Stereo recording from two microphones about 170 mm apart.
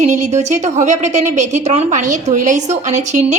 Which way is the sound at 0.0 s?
45° right (ahead or behind).